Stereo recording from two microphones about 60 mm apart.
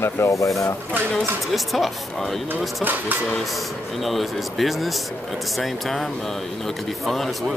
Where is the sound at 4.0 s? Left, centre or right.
Centre.